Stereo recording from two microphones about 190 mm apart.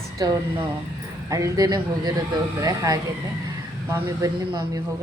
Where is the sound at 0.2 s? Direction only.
20° right (ahead or behind).